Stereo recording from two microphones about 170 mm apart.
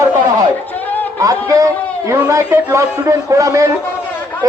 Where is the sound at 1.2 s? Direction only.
20° right (ahead or behind).